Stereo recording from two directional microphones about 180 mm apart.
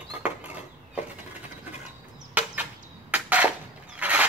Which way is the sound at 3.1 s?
10° right (ahead or behind).